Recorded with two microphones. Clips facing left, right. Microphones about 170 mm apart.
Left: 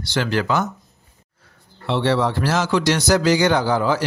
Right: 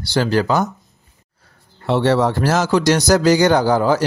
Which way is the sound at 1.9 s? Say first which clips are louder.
Right 4 dB; 45° right (ahead or behind).